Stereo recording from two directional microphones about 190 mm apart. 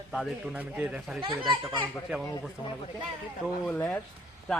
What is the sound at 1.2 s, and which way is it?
Speech, 25° right (ahead or behind).